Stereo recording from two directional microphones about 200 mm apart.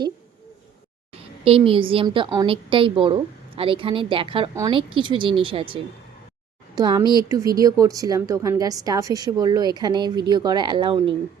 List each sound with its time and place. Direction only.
1.5 s a woman's voice: 25° right (ahead or behind)